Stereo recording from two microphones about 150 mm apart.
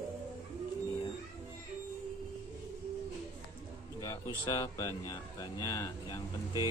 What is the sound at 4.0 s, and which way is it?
Speech, 25° left (ahead or behind).